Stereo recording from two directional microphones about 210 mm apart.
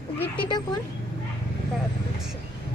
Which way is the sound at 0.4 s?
20° left (ahead or behind).